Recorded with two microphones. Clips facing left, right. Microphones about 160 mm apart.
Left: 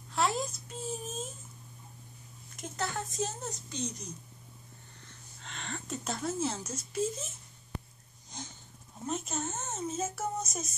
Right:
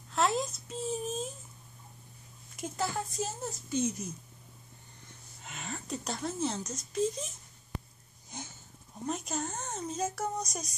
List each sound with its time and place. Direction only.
0.1 s a sound: centre (ahead or behind)
2.5 s speech: centre (ahead or behind)
5.4 s speech: 5° right (ahead or behind)
9.0 s speech: centre (ahead or behind)